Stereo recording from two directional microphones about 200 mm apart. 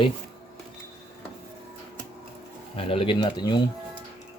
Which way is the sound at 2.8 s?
25° left (ahead or behind).